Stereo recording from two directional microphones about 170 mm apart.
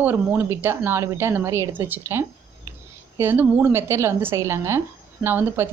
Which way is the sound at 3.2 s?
10° right (ahead or behind).